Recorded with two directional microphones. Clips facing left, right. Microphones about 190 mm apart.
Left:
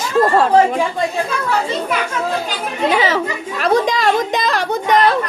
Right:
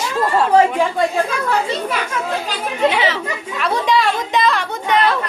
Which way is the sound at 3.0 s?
40° left (ahead or behind).